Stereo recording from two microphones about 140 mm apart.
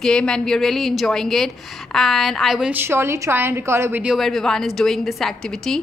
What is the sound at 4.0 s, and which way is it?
A woman's voice, centre (ahead or behind).